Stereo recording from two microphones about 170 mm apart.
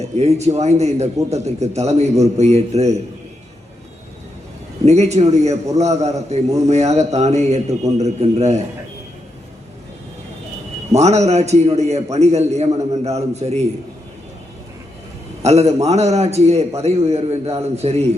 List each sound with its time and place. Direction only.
0.0 s a man's voice: 40° right (ahead or behind)
4.9 s a man's voice: 40° right (ahead or behind)
10.9 s a man's voice: 40° right (ahead or behind)
15.4 s a man's voice: 40° right (ahead or behind)